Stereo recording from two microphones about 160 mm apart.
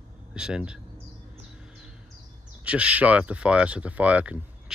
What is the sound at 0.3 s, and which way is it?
Speech, 5° right (ahead or behind).